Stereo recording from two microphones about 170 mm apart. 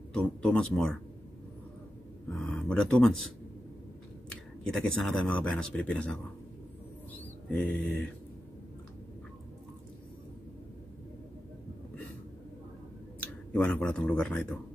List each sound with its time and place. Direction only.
0.4 s speech: 5° left (ahead or behind)
2.3 s speech: 5° left (ahead or behind)
4.3 s speech: 5° left (ahead or behind)
7.4 s speech: 10° left (ahead or behind)
13.5 s speech: 5° left (ahead or behind)